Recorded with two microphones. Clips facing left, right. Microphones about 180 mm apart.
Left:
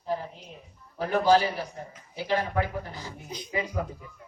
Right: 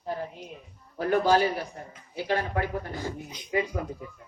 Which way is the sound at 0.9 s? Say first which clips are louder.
Even; 50° right (ahead or behind).